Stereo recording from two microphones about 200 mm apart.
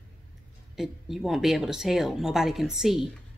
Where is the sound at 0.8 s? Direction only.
Centre (ahead or behind).